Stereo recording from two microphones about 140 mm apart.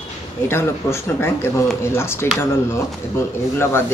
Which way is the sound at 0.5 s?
20° left (ahead or behind).